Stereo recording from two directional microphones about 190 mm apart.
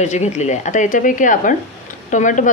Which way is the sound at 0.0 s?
35° left (ahead or behind).